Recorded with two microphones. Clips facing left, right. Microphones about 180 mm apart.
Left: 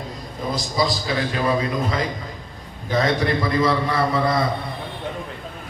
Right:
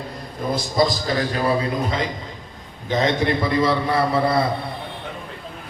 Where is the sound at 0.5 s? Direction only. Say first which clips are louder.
Right 3 dB; 50° right (ahead or behind).